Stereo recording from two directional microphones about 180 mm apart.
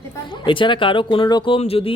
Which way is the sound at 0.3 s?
25° left (ahead or behind).